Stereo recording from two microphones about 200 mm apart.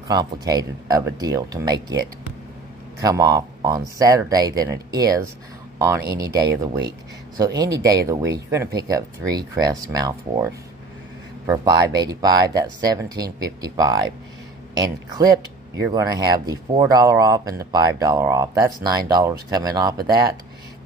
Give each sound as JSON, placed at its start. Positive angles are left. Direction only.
{"t": 0.1, "sound": "speech", "side_deg": -20}